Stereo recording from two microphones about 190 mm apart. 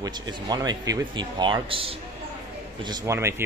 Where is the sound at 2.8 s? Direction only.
20° right (ahead or behind).